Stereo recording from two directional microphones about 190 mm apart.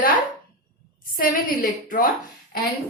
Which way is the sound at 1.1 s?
50° left (ahead or behind).